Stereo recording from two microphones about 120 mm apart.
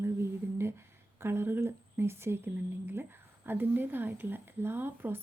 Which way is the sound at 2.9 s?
20° right (ahead or behind).